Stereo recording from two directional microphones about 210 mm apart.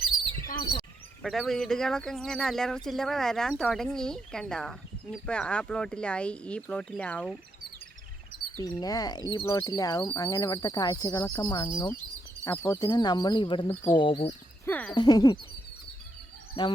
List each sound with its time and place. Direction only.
1.2 s speech: centre (ahead or behind)
8.7 s speech: 15° left (ahead or behind)
13.7 s speech: 10° left (ahead or behind)
14.0 s speech: 25° left (ahead or behind)
14.6 s speech: 10° left (ahead or behind)
14.9 s speech: 20° left (ahead or behind)
16.6 s speech: 25° left (ahead or behind)